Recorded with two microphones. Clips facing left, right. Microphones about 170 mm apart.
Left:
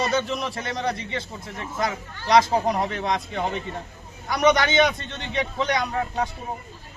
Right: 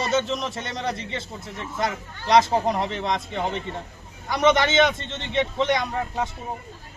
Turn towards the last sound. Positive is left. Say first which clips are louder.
# left 1 dB
turn(degrees=0)  # may be behind; listen again after turning